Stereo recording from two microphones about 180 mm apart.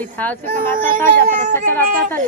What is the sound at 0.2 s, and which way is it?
Speech, 10° left (ahead or behind).